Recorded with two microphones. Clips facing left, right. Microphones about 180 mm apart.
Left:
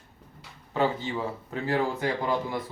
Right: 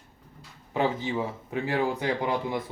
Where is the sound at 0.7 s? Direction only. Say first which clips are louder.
Even; 15° right (ahead or behind).